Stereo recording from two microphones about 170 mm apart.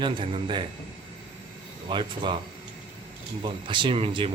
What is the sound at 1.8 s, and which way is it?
Speech, 30° right (ahead or behind).